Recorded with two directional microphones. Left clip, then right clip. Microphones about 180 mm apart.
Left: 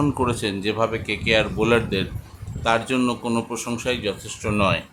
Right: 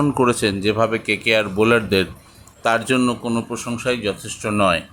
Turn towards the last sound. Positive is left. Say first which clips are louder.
# right 4 dB
turn(degrees=-15)  # may be behind; listen again after turning